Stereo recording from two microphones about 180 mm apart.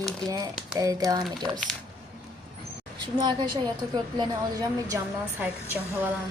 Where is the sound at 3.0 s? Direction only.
25° right (ahead or behind); by 6.1 s 10° right (ahead or behind).